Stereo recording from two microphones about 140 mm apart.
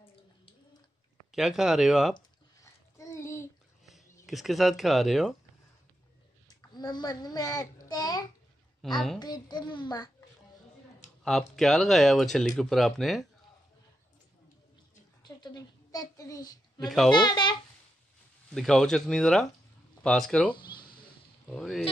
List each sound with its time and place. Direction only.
1.3 s speech: centre (ahead or behind)
2.1 s a sound: 25° left (ahead or behind)
4.3 s speech: centre (ahead or behind)
6.6 s a child's voice: 30° left (ahead or behind)
8.8 s speech: centre (ahead or behind)
9.2 s a child's voice: 30° left (ahead or behind)
11.2 s speech: centre (ahead or behind)
15.2 s a woman's voice: 30° left (ahead or behind)
18.5 s speech: 5° left (ahead or behind)